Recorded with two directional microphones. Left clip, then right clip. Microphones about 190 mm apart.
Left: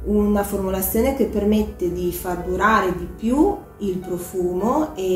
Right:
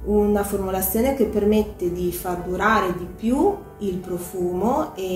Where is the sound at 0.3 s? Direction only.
10° left (ahead or behind).